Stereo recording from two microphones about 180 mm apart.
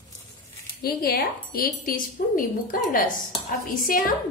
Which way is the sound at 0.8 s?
60° left (ahead or behind).